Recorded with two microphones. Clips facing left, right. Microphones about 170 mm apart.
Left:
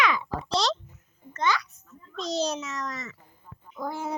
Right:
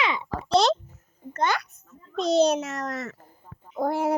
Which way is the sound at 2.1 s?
60° right (ahead or behind).